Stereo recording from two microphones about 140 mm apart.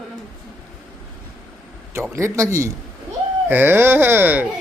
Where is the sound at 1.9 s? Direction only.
20° right (ahead or behind).